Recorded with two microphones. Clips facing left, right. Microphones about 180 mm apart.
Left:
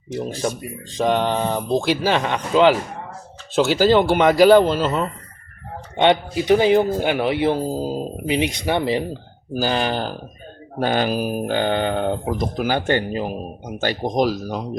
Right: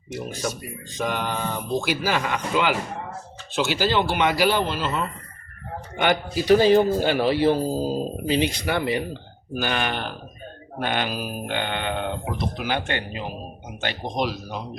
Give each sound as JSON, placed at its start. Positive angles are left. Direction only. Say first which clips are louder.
{"t": 0.9, "sound": "a man's voice", "louder": "left 8 dB", "side_deg": 30}
{"t": 3.5, "sound": "speech", "louder": "left 7 dB", "side_deg": 40}
{"t": 6.0, "sound": "a man's voice", "louder": "left 5 dB", "side_deg": 25}